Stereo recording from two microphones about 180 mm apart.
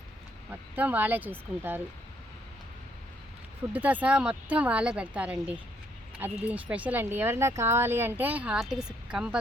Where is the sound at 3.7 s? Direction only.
10° right (ahead or behind).